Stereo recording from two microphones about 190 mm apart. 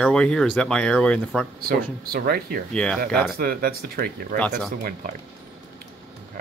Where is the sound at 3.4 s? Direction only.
50° right (ahead or behind).